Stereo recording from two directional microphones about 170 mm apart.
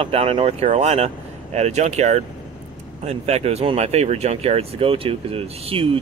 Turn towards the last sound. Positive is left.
turn(degrees=-35)  # may be behind; listen again after turning